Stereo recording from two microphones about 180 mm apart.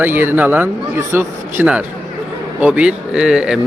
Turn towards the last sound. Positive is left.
turn(degrees=-5)  # may be behind; listen again after turning